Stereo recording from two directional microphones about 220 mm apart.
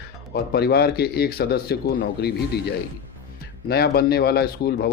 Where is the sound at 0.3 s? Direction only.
45° left (ahead or behind).